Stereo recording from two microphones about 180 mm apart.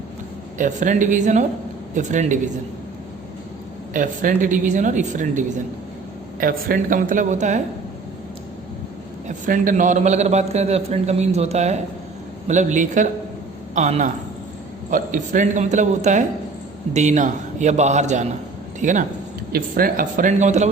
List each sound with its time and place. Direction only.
0.6 s a woman's voice: 45° right (ahead or behind)
3.9 s a woman's voice: 50° right (ahead or behind)
9.2 s a man's voice: 45° right (ahead or behind)